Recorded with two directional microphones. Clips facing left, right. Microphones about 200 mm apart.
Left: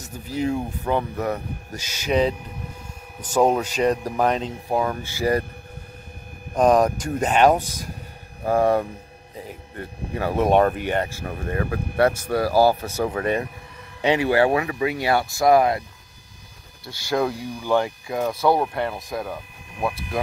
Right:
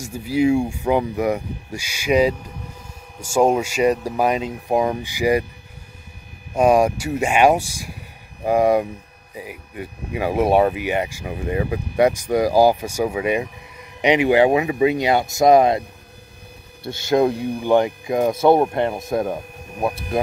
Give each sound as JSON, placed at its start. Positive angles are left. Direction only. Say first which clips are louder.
{"t": 0.0, "sound": "speech", "louder": "right 7 dB", "side_deg": -10}
{"t": 6.5, "sound": "speech", "louder": "right 2 dB", "side_deg": -10}
{"t": 16.8, "sound": "speech", "louder": "right 6 dB", "side_deg": -25}
{"t": 19.3, "sound": "speech", "louder": "right 6 dB", "side_deg": -40}